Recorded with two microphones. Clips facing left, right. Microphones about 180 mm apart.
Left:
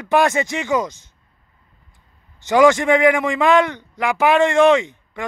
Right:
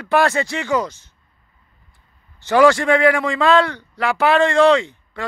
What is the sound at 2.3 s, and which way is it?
A man's voice, 20° left (ahead or behind).